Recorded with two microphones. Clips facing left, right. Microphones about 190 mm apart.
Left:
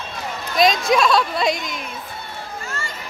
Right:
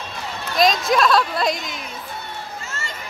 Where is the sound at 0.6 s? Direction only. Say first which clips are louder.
Left 1 dB; centre (ahead or behind).